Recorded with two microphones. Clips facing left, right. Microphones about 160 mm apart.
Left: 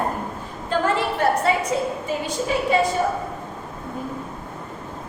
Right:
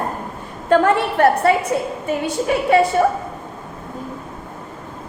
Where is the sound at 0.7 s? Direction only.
60° right (ahead or behind).